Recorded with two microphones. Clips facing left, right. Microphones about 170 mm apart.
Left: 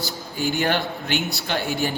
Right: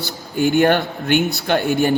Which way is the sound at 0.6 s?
55° right (ahead or behind).